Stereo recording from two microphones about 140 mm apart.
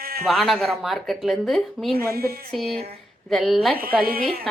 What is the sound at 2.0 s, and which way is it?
Speech, 90° right.